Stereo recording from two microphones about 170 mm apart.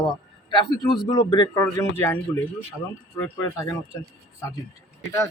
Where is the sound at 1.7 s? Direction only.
15° left (ahead or behind).